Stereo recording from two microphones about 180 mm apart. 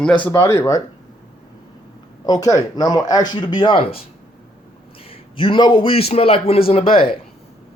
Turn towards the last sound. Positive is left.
turn(degrees=30)  # may be behind; listen again after turning